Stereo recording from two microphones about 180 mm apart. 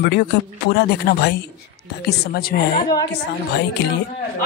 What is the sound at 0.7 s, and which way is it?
A man's voice, 65° left (ahead or behind).